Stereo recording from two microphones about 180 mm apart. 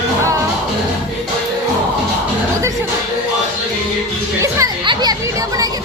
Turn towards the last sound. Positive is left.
turn(degrees=-20)  # may be behind; listen again after turning